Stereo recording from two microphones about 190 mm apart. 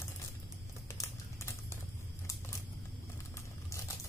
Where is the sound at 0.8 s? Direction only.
15° left (ahead or behind).